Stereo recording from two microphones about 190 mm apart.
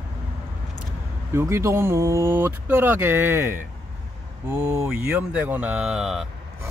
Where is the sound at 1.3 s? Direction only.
15° right (ahead or behind).